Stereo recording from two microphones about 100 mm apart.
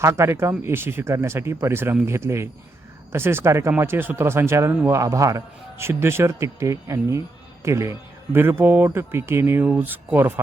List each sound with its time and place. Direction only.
0.0 s a man's voice: 25° right (ahead or behind)